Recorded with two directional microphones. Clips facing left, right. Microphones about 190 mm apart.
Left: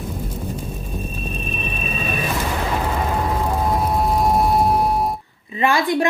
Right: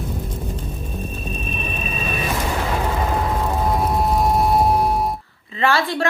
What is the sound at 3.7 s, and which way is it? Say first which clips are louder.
Music: right 1 dB; centre (ahead or behind).